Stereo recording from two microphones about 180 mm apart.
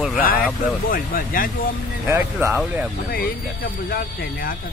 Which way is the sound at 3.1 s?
55° left (ahead or behind).